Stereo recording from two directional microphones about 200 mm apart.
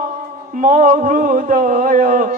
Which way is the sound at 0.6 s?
40° right (ahead or behind).